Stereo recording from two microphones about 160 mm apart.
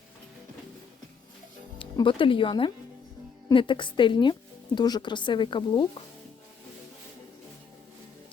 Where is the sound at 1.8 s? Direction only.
30° left (ahead or behind).